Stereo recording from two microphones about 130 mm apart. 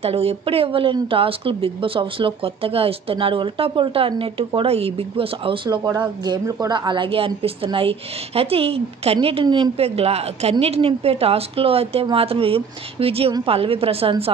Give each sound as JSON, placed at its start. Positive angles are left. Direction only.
{"t": 0.0, "sound": "a woman's voice", "side_deg": -50}